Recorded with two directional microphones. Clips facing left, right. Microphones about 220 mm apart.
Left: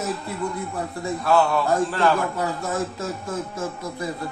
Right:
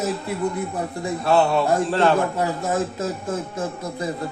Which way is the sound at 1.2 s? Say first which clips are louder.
Right 2 dB; 25° right (ahead or behind).